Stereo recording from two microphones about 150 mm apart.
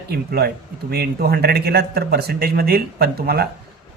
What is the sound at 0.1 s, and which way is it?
Speech, 90° right.